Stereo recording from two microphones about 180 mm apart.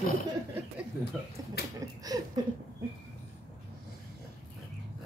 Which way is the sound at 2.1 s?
20° right (ahead or behind).